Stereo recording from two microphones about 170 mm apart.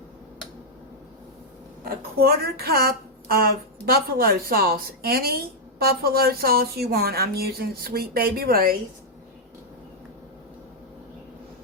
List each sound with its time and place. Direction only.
1.8 s speech: 65° right (ahead or behind)